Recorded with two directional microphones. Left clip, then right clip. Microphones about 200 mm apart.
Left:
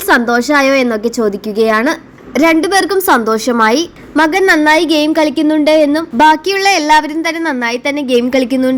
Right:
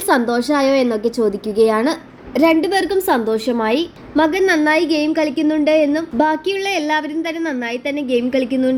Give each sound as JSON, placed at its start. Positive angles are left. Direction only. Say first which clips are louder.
{"t": 0.1, "sound": "a woman's voice", "louder": "left 6 dB", "side_deg": 20}